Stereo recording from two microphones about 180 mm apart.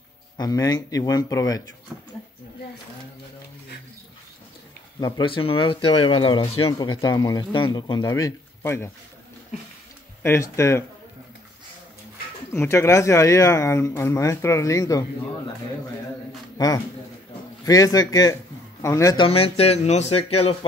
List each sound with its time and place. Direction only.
0.4 s speech: 20° left (ahead or behind)
5.0 s speech: 25° left (ahead or behind)
10.2 s speech: 15° left (ahead or behind)
12.5 s speech: 15° left (ahead or behind)
16.5 s a man's voice: 20° left (ahead or behind)
19.2 s speech: 30° left (ahead or behind)